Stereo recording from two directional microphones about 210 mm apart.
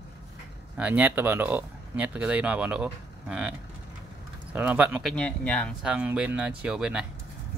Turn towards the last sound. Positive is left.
turn(degrees=-5)  # may be behind; listen again after turning